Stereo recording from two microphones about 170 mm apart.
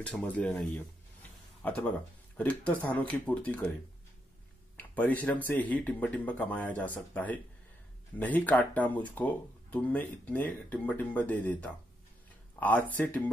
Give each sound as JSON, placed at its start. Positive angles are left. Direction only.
{"t": 0.0, "sound": "speech", "side_deg": 10}
{"t": 4.7, "sound": "speech", "side_deg": 10}